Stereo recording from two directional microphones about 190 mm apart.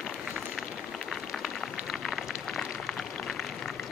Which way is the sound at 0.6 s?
Centre (ahead or behind).